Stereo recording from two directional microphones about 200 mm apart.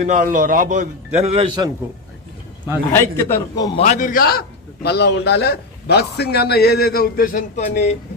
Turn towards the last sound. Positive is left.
turn(degrees=35)  # may be behind; listen again after turning